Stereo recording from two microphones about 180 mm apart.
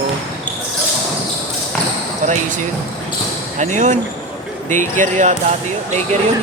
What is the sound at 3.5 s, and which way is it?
Speech, 40° right (ahead or behind).